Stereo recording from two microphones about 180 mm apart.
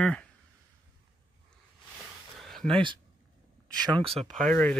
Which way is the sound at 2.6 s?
30° right (ahead or behind).